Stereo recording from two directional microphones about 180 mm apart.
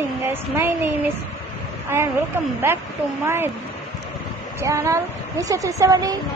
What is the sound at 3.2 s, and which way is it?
Speech, 15° right (ahead or behind).